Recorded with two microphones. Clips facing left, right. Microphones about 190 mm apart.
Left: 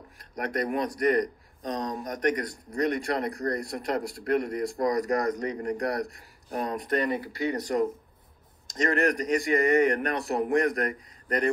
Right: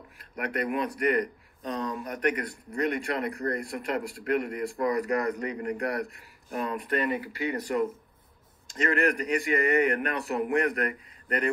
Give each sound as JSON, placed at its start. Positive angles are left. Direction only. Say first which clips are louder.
{"t": 0.4, "sound": "a man's voice", "louder": "left 1 dB", "side_deg": 40}